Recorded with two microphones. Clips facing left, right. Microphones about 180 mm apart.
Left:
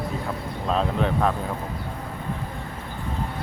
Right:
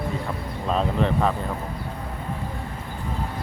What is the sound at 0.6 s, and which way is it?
Speech, centre (ahead or behind).